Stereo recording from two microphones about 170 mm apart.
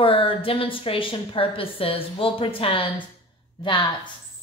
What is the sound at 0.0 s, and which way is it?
A woman's voice, 30° left (ahead or behind).